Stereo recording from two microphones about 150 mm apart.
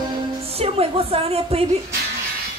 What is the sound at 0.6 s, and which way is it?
A woman's voice, 40° right (ahead or behind).